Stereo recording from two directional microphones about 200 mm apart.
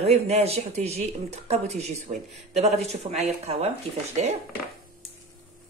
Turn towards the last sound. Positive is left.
turn(degrees=-35)  # may be behind; listen again after turning